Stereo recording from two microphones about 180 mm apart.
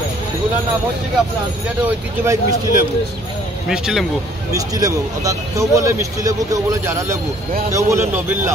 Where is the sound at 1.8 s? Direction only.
15° right (ahead or behind).